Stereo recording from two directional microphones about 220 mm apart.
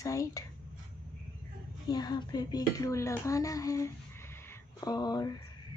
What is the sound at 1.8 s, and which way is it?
Speech, 20° left (ahead or behind).